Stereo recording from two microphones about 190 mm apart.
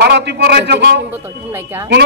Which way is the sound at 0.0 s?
65° right (ahead or behind).